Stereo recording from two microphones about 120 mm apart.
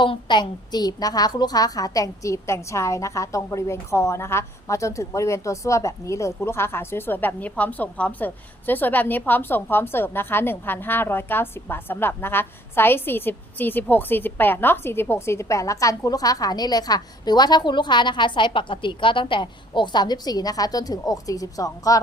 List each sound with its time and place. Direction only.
0.0 s a woman's voice: 40° left (ahead or behind)